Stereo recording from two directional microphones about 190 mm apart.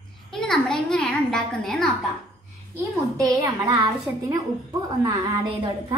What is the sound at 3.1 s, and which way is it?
Speech, 15° right (ahead or behind).